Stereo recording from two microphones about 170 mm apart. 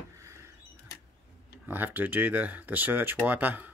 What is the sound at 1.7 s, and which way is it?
Speech, 10° right (ahead or behind).